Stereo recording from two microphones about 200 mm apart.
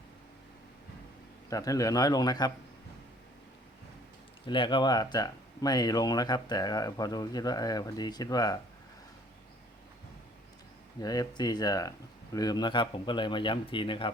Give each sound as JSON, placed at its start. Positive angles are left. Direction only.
{"t": 1.5, "sound": "speech", "side_deg": 15}
{"t": 4.4, "sound": "speech", "side_deg": 25}
{"t": 11.0, "sound": "speech", "side_deg": 20}